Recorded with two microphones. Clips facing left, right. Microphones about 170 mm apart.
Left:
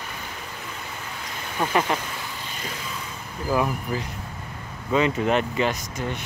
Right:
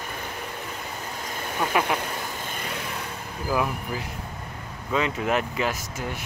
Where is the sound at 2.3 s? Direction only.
50° right (ahead or behind).